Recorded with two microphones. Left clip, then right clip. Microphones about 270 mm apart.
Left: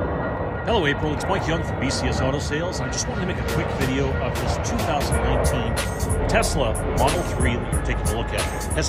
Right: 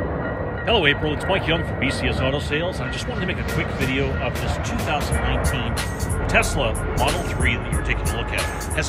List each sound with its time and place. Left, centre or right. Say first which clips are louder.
0.7 s speech: right 3 dB; centre
6.4 s speech: right 3 dB; centre